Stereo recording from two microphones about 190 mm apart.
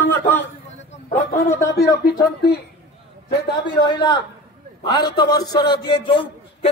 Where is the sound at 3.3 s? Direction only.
25° left (ahead or behind).